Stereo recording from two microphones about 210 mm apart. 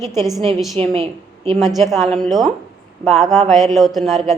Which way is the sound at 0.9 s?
30° right (ahead or behind).